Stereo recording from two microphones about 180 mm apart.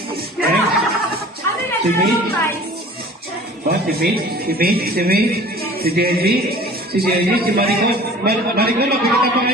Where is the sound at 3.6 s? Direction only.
60° right (ahead or behind).